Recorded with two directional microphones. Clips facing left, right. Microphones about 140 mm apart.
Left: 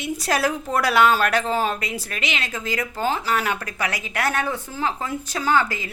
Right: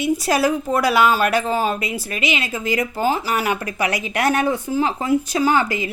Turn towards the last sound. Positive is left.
turn(degrees=-15)  # may be behind; listen again after turning